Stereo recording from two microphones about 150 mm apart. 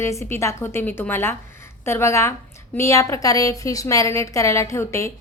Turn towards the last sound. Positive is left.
turn(degrees=20)  # may be behind; listen again after turning